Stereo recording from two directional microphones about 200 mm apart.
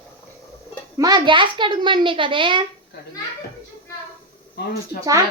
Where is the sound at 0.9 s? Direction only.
20° right (ahead or behind).